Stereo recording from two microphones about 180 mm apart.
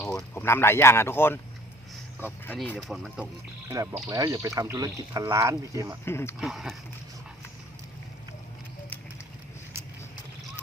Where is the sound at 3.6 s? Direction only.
15° right (ahead or behind).